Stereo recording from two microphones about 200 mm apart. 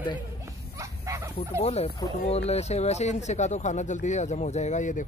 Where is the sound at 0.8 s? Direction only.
15° right (ahead or behind).